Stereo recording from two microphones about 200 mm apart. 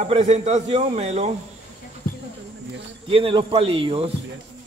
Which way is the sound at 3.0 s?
25° right (ahead or behind).